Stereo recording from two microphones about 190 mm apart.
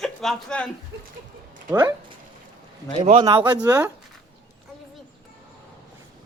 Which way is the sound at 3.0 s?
25° right (ahead or behind).